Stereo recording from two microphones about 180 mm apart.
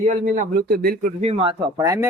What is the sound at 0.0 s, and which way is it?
Speech, 45° right (ahead or behind).